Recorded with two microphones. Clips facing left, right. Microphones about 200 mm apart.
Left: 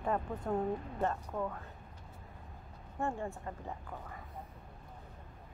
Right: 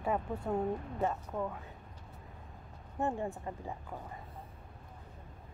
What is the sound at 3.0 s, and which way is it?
Speech, 15° right (ahead or behind).